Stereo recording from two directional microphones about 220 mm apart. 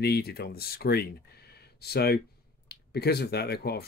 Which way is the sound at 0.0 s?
45° left (ahead or behind).